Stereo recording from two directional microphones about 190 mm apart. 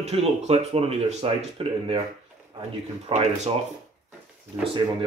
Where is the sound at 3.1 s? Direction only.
35° right (ahead or behind).